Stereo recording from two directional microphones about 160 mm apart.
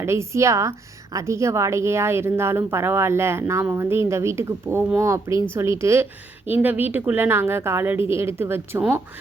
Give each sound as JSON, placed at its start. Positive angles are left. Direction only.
{"t": 0.0, "sound": "speech", "side_deg": -15}